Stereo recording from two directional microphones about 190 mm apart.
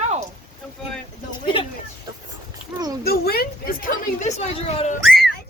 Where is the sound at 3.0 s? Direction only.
55° left (ahead or behind); by 5.0 s 35° left (ahead or behind).